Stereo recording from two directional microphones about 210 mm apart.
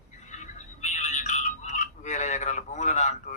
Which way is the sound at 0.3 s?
35° left (ahead or behind).